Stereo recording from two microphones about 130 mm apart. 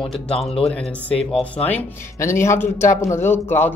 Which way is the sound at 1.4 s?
10° left (ahead or behind).